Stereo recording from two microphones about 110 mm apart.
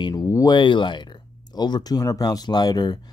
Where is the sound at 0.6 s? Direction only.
45° left (ahead or behind).